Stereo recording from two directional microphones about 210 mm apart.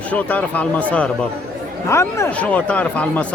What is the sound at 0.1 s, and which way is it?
Speech, 5° left (ahead or behind).